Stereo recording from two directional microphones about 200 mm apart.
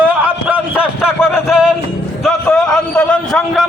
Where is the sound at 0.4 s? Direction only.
5° right (ahead or behind).